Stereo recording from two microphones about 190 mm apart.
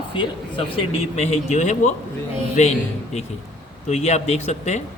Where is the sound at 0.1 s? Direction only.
25° left (ahead or behind).